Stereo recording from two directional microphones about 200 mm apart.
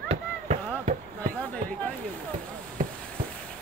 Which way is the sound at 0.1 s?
35° right (ahead or behind).